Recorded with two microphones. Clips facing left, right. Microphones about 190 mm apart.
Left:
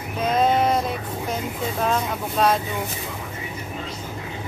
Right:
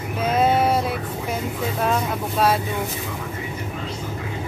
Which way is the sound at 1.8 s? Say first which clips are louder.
Right 1 dB; 5° right (ahead or behind).